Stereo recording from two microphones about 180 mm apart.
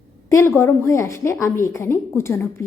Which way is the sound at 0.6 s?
15° left (ahead or behind).